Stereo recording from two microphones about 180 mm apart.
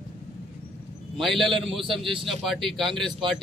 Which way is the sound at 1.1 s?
Centre (ahead or behind).